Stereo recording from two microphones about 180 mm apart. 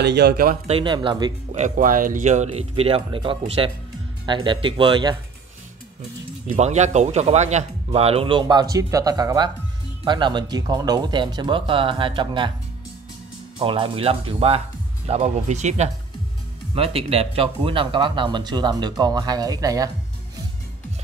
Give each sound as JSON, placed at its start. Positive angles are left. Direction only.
{"t": 0.0, "sound": "a man's voice", "side_deg": -65}
{"t": 0.7, "sound": "speech", "side_deg": -30}
{"t": 1.5, "sound": "speech", "side_deg": -45}
{"t": 6.4, "sound": "speech", "side_deg": -40}
{"t": 13.6, "sound": "speech", "side_deg": -30}